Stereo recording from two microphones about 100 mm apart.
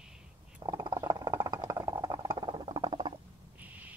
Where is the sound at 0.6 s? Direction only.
40° right (ahead or behind).